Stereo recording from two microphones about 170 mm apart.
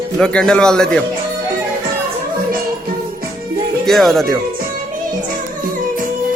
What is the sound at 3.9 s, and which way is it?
Speech, centre (ahead or behind).